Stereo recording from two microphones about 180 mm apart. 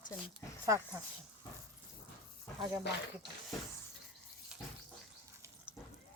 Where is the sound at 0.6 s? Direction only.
15° right (ahead or behind).